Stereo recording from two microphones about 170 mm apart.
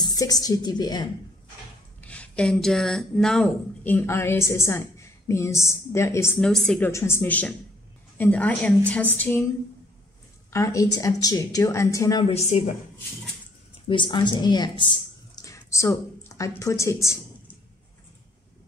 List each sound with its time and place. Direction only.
0.0 s speech: 20° left (ahead or behind)
2.0 s speech: 5° left (ahead or behind)
6.4 s a woman's voice: centre (ahead or behind)
6.9 s speech: 15° left (ahead or behind)
10.5 s speech: 20° left (ahead or behind)
12.3 s a woman's voice: 40° left (ahead or behind)
13.8 s speech: 30° left (ahead or behind)